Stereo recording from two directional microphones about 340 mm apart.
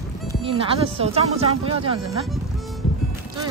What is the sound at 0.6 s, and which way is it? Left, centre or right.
Speech, centre.